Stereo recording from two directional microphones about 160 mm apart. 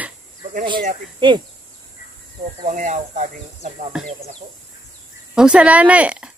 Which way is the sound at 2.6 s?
50° right (ahead or behind).